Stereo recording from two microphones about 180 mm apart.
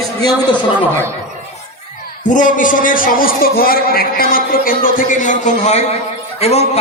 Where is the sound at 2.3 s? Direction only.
45° left (ahead or behind).